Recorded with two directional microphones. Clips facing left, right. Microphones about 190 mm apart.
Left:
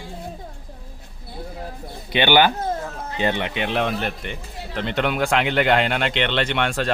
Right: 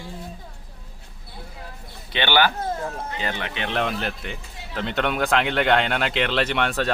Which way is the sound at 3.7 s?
5° left (ahead or behind).